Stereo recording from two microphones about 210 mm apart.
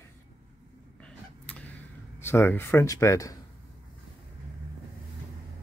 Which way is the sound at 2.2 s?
10° left (ahead or behind).